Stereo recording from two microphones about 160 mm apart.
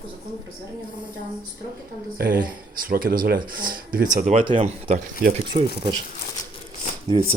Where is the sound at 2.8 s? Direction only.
65° right (ahead or behind).